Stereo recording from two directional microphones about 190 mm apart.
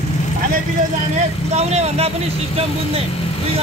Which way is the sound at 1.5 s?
35° right (ahead or behind).